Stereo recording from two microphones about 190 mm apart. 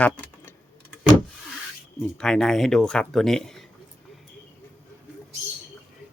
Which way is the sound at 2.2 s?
5° left (ahead or behind).